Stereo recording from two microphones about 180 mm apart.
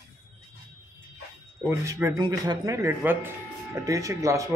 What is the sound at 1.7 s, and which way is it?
Speech, 15° right (ahead or behind).